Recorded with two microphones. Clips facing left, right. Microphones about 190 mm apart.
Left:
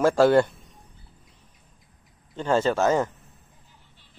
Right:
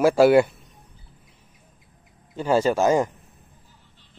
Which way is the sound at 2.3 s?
10° right (ahead or behind).